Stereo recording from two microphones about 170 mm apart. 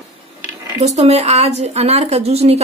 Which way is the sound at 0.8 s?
40° right (ahead or behind).